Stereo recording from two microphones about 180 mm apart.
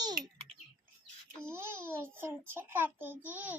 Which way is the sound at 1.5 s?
15° right (ahead or behind).